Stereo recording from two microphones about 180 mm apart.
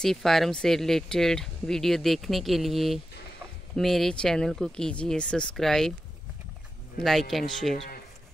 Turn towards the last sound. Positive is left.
turn(degrees=0)  # may be behind; listen again after turning